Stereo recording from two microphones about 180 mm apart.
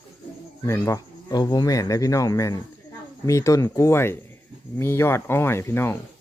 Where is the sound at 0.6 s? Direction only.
15° left (ahead or behind).